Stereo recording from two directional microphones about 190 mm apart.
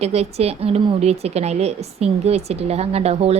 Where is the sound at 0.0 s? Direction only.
35° right (ahead or behind).